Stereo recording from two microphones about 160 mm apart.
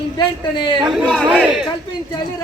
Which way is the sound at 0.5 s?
30° left (ahead or behind).